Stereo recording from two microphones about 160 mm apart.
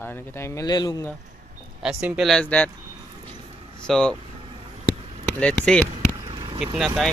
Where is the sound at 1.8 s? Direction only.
5° right (ahead or behind).